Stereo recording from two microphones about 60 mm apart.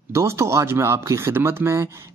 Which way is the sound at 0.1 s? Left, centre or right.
Right.